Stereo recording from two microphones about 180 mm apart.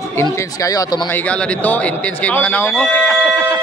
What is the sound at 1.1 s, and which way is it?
Speech, 5° left (ahead or behind).